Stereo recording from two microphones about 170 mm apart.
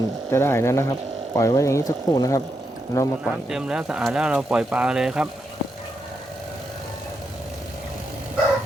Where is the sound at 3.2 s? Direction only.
5° right (ahead or behind).